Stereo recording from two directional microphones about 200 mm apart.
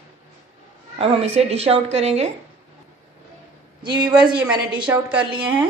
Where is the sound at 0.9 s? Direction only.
30° right (ahead or behind).